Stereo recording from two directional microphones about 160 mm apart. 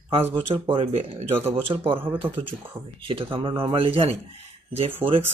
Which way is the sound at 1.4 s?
15° right (ahead or behind).